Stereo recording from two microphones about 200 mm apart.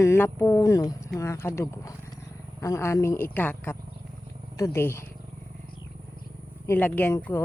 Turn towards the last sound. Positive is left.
turn(degrees=10)  # may be behind; listen again after turning